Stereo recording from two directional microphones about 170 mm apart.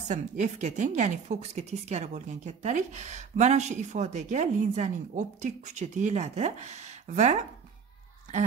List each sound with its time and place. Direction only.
0.1 s a woman's voice: 45° right (ahead or behind)